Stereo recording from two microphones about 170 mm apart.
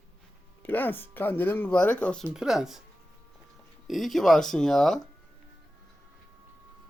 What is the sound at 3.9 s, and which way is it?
Speech, centre (ahead or behind).